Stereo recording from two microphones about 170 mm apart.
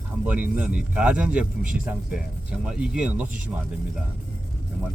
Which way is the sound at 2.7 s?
5° right (ahead or behind).